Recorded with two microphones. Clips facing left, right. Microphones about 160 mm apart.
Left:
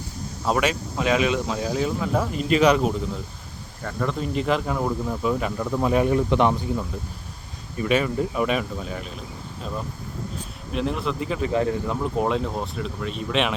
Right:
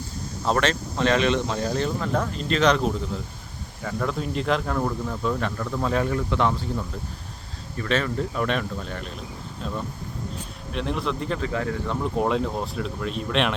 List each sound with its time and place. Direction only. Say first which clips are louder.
0.4 s speech: even; 10° left (ahead or behind)
3.8 s speech: left 1 dB; centre (ahead or behind); by 6.7 s 20° left (ahead or behind)
7.8 s speech: left 3 dB; 10° left (ahead or behind)
11.3 s speech: left 4 dB; 20° left (ahead or behind)
11.9 s speech: even; centre (ahead or behind)